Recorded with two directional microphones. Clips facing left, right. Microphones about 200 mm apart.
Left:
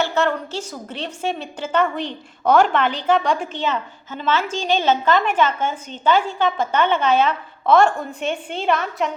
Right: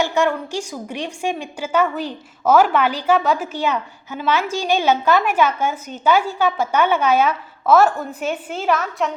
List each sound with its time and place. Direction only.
0.0 s a woman's voice: 15° right (ahead or behind)